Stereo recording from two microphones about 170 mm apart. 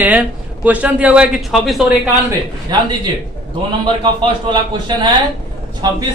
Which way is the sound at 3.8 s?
25° right (ahead or behind).